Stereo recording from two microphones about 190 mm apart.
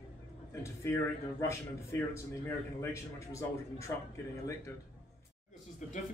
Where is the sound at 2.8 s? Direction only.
15° left (ahead or behind).